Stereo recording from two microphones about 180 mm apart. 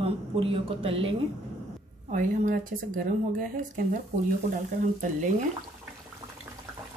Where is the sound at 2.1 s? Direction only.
45° right (ahead or behind).